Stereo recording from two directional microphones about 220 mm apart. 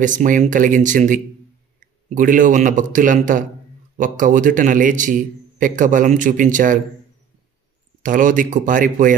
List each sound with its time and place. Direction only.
0.0 s a man's voice: 35° right (ahead or behind)
8.0 s a man's voice: 35° right (ahead or behind)